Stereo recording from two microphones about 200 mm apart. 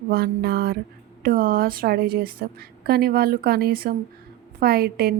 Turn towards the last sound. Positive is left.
turn(degrees=-50)  # may be behind; listen again after turning